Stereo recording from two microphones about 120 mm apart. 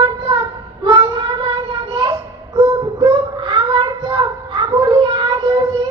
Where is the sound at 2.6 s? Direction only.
50° right (ahead or behind).